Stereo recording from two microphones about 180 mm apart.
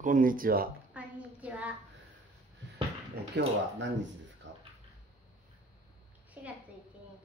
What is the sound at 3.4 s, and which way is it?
Speech, 80° right.